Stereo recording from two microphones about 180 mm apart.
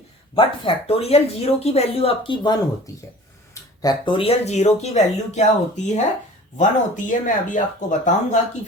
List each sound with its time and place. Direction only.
0.3 s speech: 30° left (ahead or behind)